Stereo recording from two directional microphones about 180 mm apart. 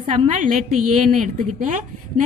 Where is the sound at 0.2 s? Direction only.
40° right (ahead or behind).